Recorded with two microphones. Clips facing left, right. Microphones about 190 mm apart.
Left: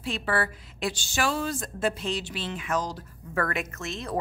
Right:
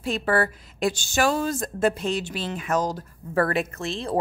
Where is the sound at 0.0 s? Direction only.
45° right (ahead or behind).